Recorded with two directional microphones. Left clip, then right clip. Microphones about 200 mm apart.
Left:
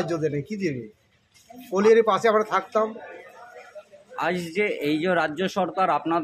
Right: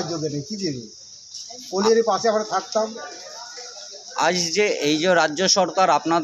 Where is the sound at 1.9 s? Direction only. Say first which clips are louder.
Right 1 dB; 15° left (ahead or behind).